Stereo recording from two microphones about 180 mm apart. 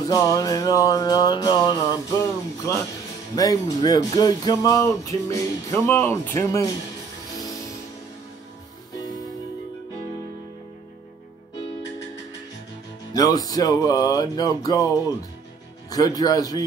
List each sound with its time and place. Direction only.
0.0 s speech: 20° left (ahead or behind)
13.1 s speech: 20° left (ahead or behind)
15.9 s speech: 20° left (ahead or behind)